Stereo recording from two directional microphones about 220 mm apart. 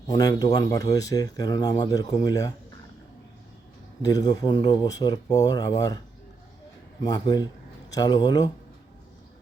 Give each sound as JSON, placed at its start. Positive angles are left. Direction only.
{"t": 0.1, "sound": "speech", "side_deg": 15}
{"t": 4.0, "sound": "speech", "side_deg": 20}
{"t": 7.0, "sound": "speech", "side_deg": 15}